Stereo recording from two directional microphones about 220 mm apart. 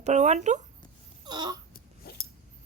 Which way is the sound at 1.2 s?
20° right (ahead or behind).